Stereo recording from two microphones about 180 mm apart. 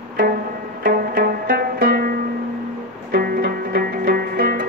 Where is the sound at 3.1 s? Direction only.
55° right (ahead or behind).